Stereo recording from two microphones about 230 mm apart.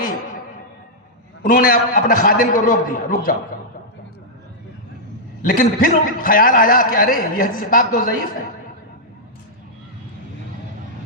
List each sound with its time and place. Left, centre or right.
1.4 s a man's voice: left
5.4 s a man's voice: left